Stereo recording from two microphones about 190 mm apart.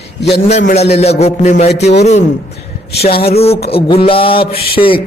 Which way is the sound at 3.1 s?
55° left (ahead or behind).